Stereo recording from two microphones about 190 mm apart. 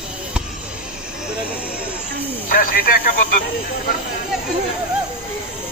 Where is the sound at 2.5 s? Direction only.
50° left (ahead or behind).